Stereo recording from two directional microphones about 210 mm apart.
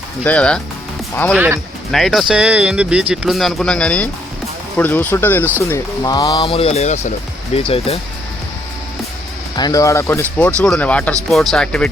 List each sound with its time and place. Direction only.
0.3 s speech: 5° left (ahead or behind); by 7.7 s 30° left (ahead or behind)
9.6 s speech: 20° left (ahead or behind)